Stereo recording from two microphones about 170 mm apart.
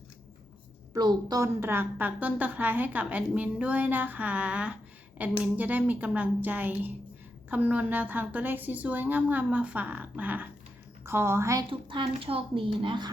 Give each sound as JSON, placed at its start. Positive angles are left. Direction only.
{"t": 0.9, "sound": "a woman's voice", "side_deg": -20}
{"t": 11.7, "sound": "speech", "side_deg": -30}